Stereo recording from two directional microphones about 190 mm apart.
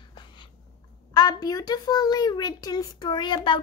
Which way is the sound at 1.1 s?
20° left (ahead or behind).